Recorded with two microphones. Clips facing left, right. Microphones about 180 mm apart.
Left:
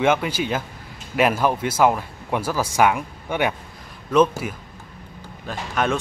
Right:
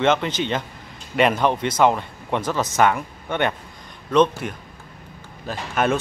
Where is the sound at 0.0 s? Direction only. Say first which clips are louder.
Even; 10° left (ahead or behind).